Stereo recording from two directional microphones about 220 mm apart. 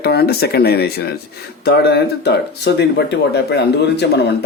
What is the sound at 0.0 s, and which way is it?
Speech, 45° left (ahead or behind).